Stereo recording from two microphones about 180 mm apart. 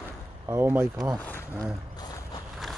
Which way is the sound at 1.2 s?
10° left (ahead or behind).